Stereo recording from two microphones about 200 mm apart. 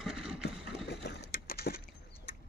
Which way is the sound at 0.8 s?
55° left (ahead or behind).